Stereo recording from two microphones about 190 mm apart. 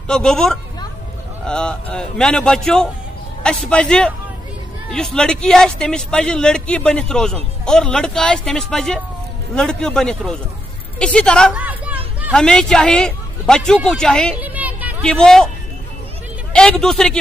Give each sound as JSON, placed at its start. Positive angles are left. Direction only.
{"t": 0.1, "sound": "speech", "side_deg": 5}
{"t": 11.6, "sound": "hubbub", "side_deg": -10}
{"t": 12.3, "sound": "speech", "side_deg": 5}
{"t": 14.3, "sound": "a sound", "side_deg": -10}
{"t": 15.0, "sound": "speech", "side_deg": 5}
{"t": 16.5, "sound": "speech", "side_deg": 5}